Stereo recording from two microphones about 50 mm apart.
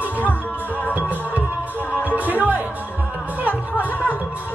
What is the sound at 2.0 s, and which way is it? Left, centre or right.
Music, right.